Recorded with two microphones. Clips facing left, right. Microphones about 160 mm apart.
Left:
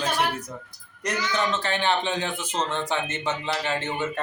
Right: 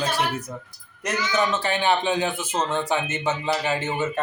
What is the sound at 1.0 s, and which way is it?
Speech, 10° right (ahead or behind).